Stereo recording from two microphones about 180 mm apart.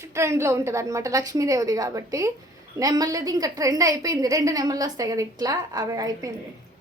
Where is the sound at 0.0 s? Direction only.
15° right (ahead or behind).